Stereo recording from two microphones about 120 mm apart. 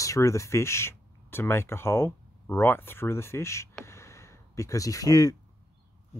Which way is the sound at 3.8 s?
25° left (ahead or behind).